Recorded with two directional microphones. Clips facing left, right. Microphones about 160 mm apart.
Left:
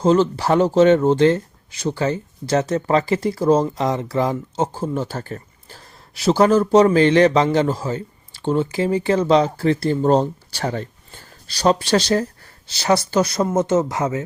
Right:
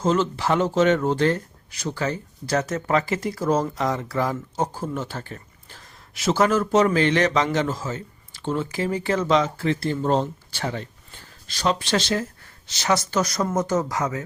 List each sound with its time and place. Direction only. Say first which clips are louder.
0.0 s speech: left 6 dB; 30° left (ahead or behind)